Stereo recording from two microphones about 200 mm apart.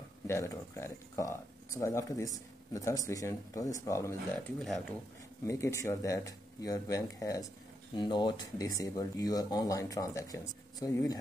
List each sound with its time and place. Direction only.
0.3 s speech: 15° left (ahead or behind)
4.6 s speech: centre (ahead or behind)
5.4 s speech: 15° left (ahead or behind)